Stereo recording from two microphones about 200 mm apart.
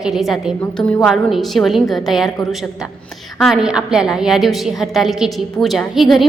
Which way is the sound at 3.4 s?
Centre (ahead or behind).